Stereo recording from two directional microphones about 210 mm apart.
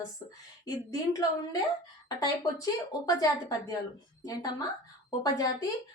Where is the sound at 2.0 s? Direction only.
15° left (ahead or behind).